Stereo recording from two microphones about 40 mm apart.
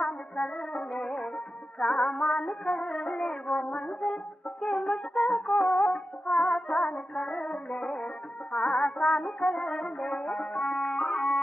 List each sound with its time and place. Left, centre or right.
0.0 s music: left